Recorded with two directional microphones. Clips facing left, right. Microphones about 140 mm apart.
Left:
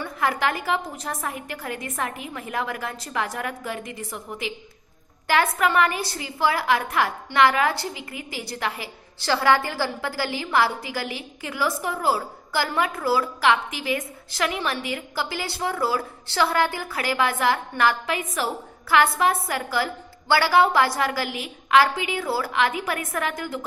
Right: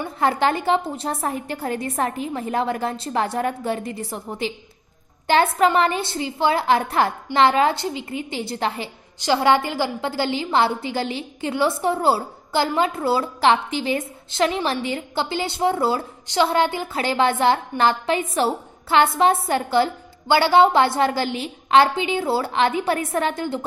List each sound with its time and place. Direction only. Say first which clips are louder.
0.2 s a woman's voice: right 5 dB; 30° right (ahead or behind)